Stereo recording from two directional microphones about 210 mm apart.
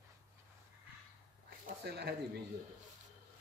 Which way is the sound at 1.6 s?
50° right (ahead or behind).